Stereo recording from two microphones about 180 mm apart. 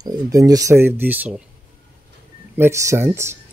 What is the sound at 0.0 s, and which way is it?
Speech, 20° right (ahead or behind).